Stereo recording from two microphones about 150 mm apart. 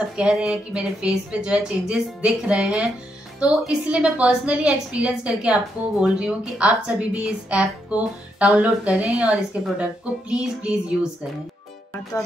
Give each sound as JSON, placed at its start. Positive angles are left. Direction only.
{"t": 0.1, "sound": "a woman's voice", "side_deg": -5}
{"t": 10.3, "sound": "music", "side_deg": -5}